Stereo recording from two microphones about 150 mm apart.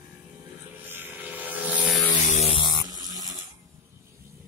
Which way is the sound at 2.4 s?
35° left (ahead or behind).